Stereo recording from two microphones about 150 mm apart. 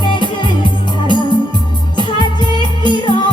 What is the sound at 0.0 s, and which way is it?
Music, 30° left (ahead or behind).